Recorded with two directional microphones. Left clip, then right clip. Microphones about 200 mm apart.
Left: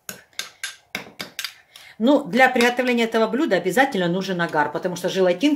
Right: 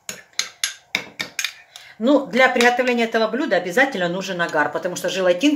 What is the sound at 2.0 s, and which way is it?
Speech, 35° left (ahead or behind).